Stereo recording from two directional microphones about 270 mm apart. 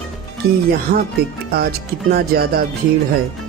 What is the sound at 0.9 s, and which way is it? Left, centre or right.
Speech, right.